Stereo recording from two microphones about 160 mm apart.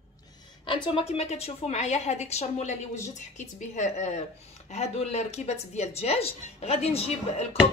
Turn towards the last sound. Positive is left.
turn(degrees=40)  # may be behind; listen again after turning